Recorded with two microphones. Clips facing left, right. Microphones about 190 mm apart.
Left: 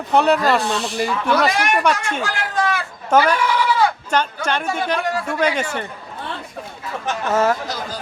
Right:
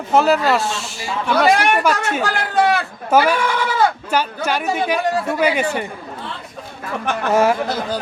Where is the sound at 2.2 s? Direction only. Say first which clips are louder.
Right 6 dB; 65° right (ahead or behind).